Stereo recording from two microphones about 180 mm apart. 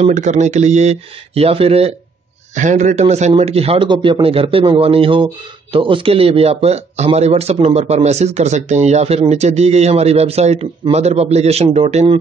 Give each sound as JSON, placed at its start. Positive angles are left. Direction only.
{"t": 0.0, "sound": "a man's voice", "side_deg": -40}